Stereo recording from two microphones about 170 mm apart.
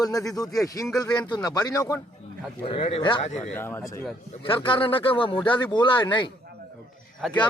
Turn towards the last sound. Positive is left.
turn(degrees=0)  # may be behind; listen again after turning